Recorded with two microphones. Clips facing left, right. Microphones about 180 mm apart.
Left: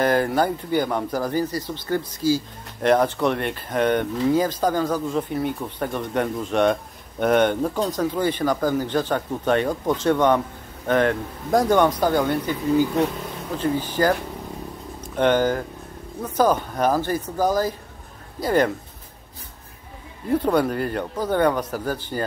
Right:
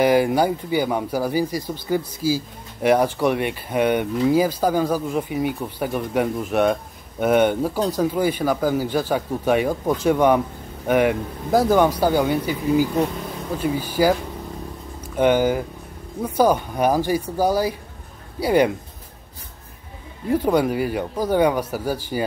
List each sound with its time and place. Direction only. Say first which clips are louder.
0.0 s speech: right 3 dB; 10° right (ahead or behind)
20.2 s speech: right 1 dB; 10° right (ahead or behind)